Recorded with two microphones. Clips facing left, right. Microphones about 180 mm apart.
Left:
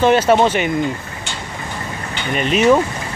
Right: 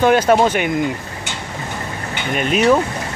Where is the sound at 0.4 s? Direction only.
5° right (ahead or behind).